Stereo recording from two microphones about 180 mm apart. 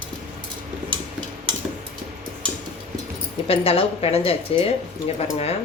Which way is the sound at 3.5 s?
30° left (ahead or behind).